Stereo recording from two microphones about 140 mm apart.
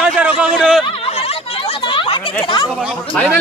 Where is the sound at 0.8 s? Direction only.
45° left (ahead or behind).